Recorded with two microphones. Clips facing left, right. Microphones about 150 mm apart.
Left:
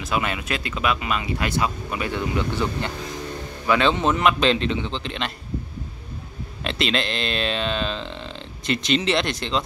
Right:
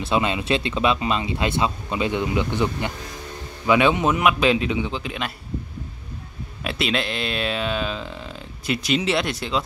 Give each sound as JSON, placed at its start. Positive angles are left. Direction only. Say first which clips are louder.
{"t": 0.0, "sound": "a man's voice", "louder": "right 3 dB", "side_deg": -25}
{"t": 6.6, "sound": "speech", "louder": "even", "side_deg": -5}